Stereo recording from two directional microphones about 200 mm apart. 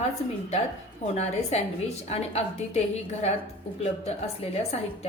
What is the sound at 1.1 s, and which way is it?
A woman's voice, 35° left (ahead or behind).